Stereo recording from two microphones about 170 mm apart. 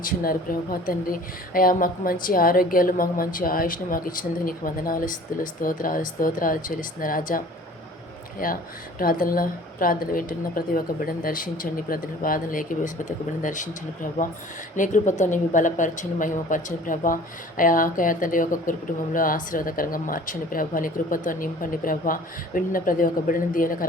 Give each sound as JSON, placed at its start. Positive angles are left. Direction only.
{"t": 0.0, "sound": "speech", "side_deg": 55}
{"t": 14.8, "sound": "a woman's voice", "side_deg": 45}